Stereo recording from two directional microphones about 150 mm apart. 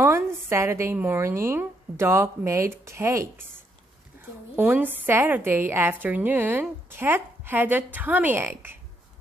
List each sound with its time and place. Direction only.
0.0 s a woman's voice: 15° right (ahead or behind)
4.6 s a woman's voice: 10° right (ahead or behind)